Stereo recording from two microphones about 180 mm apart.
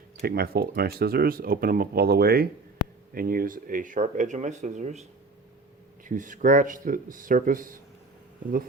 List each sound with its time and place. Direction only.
0.2 s speech: 60° right (ahead or behind); by 5.0 s 40° right (ahead or behind)
6.1 s speech: 45° right (ahead or behind)